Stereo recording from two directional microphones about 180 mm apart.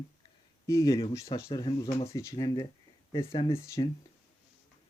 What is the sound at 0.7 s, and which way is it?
Speech, 20° left (ahead or behind).